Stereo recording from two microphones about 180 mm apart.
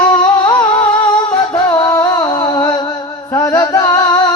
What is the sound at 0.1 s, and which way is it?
Humming, 25° left (ahead or behind).